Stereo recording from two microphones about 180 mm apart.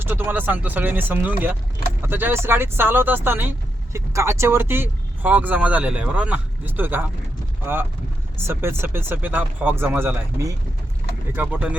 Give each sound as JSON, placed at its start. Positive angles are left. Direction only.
{"t": 0.0, "sound": "speech", "side_deg": -10}
{"t": 11.3, "sound": "speech", "side_deg": -10}